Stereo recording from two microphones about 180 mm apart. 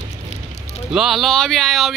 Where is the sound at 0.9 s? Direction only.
Centre (ahead or behind).